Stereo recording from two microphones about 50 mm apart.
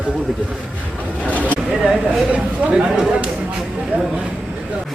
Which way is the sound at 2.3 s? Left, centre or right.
Right.